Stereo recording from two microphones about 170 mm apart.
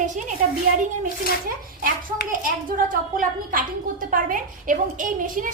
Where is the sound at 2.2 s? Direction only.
55° right (ahead or behind).